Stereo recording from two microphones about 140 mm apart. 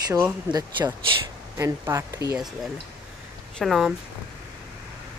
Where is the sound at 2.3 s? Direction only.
5° right (ahead or behind).